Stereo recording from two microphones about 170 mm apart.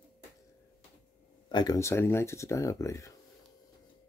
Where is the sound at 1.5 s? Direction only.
20° left (ahead or behind).